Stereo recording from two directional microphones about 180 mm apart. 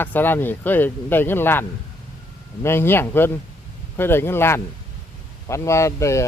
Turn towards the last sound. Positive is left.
turn(degrees=15)  # may be behind; listen again after turning